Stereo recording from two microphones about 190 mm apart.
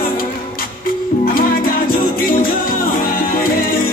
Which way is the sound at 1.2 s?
50° left (ahead or behind).